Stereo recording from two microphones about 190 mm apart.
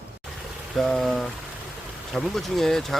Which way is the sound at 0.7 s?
Centre (ahead or behind).